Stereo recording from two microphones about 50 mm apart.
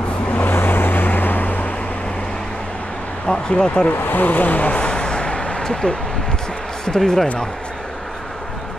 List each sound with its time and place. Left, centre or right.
0.3 s vehicle: left
3.3 s speech: centre
4.0 s a sound: left; by 5.9 s centre
7.0 s speech: centre